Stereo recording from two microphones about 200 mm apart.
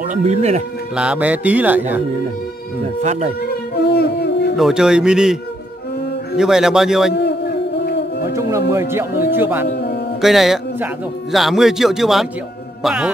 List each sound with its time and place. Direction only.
0.0 s speech: 35° right (ahead or behind)
0.9 s speech: 5° right (ahead or behind)
2.8 s speech: 35° right (ahead or behind)
3.7 s a sound: 55° left (ahead or behind)
4.6 s a man's voice: centre (ahead or behind)
7.2 s a sound: 55° left (ahead or behind)
8.3 s speech: 15° right (ahead or behind)
9.7 s music: 55° left (ahead or behind)
10.2 s a man's voice: centre (ahead or behind)